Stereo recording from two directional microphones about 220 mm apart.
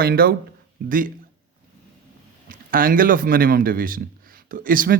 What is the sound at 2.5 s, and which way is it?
A man's voice, 40° right (ahead or behind).